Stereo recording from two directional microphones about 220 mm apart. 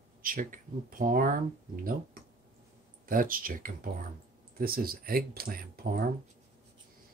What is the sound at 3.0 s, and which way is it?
Speech, 40° right (ahead or behind).